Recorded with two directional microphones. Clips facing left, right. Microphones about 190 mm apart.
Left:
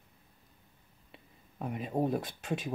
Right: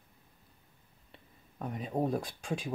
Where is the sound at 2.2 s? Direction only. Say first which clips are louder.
Left 1 dB; centre (ahead or behind).